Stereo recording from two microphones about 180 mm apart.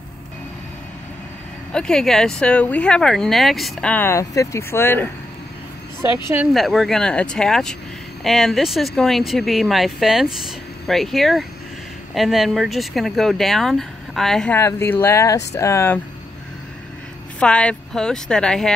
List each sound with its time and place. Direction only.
1.7 s speech: 5° left (ahead or behind)
6.2 s speech: 10° right (ahead or behind)
6.5 s speech: centre (ahead or behind)
14.6 s speech: 15° left (ahead or behind)
17.4 s speech: 5° left (ahead or behind)